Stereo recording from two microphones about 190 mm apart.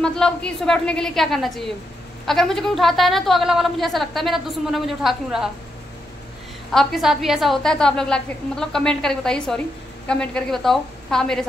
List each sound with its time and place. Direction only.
0.0 s a woman's voice: 5° left (ahead or behind)
6.7 s a woman's voice: centre (ahead or behind)